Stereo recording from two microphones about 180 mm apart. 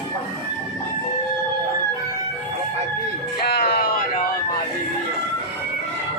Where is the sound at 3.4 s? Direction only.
60° left (ahead or behind).